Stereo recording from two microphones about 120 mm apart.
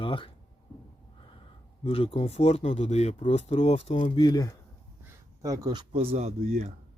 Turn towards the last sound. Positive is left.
turn(degrees=-65)  # may be behind; listen again after turning